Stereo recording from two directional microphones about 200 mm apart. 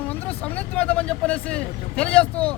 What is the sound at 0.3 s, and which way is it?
Speech, 5° left (ahead or behind).